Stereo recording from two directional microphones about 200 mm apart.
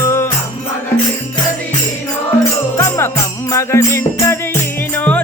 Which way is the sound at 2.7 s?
15° left (ahead or behind).